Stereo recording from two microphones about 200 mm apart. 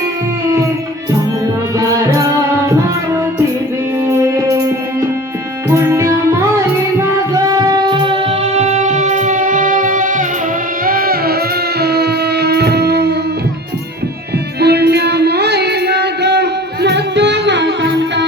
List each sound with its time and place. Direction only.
1.8 s music: 15° right (ahead or behind)
4.0 s music: 15° right (ahead or behind); by 13.1 s 55° right (ahead or behind)
14.6 s music: 55° right (ahead or behind)